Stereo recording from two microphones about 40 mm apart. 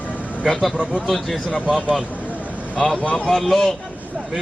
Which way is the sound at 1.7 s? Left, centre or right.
Centre.